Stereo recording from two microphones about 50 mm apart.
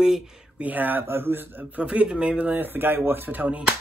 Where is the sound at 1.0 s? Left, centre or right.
Right.